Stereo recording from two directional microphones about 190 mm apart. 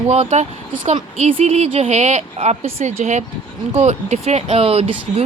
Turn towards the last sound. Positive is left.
turn(degrees=-30)  # may be behind; listen again after turning